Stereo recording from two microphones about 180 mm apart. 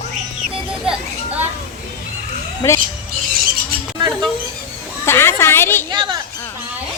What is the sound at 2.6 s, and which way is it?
Speech, 15° left (ahead or behind).